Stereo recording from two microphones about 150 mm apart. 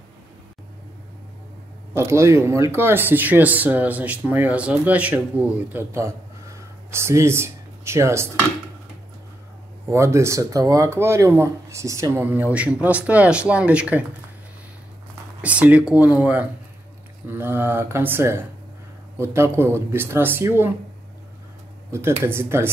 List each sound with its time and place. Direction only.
2.0 s speech: 20° right (ahead or behind)
9.8 s speech: 20° right (ahead or behind)
15.4 s speech: 10° right (ahead or behind)
22.2 s speech: 15° right (ahead or behind)